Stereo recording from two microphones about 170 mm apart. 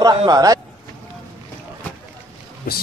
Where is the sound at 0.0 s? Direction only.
25° right (ahead or behind).